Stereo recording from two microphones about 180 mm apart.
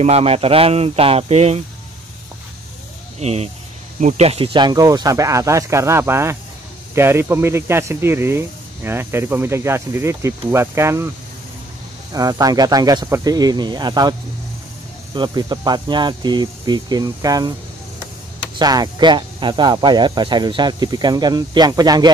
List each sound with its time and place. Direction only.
0.0 s speech: 35° right (ahead or behind)
3.2 s speech: 35° right (ahead or behind); by 11.1 s 15° right (ahead or behind)
12.1 s speech: 20° right (ahead or behind)
15.1 s speech: 25° right (ahead or behind)
18.6 s speech: 20° right (ahead or behind)